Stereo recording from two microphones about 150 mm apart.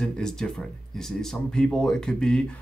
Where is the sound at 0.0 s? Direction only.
5° left (ahead or behind).